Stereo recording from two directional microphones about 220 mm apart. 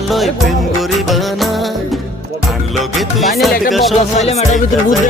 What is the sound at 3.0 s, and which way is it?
Music, centre (ahead or behind).